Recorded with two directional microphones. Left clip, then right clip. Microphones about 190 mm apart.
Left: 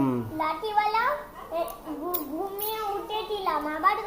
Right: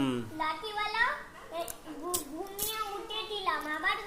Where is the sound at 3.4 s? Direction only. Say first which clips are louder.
Left 6 dB; 15° left (ahead or behind).